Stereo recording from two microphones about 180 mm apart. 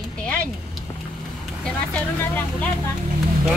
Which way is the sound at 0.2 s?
5° left (ahead or behind).